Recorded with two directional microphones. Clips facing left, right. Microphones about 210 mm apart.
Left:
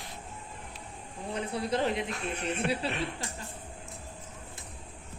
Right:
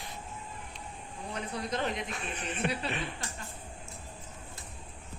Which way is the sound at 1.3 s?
30° left (ahead or behind).